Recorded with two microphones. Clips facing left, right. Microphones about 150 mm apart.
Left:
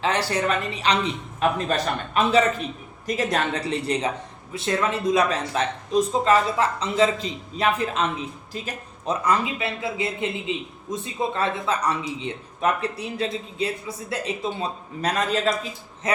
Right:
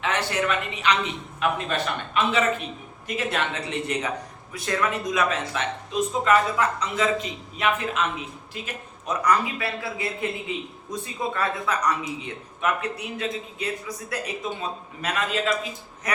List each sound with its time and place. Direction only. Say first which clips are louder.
0.0 s a man's voice: left 2 dB; 35° left (ahead or behind)
16.1 s a man's voice: left 4 dB; 25° left (ahead or behind)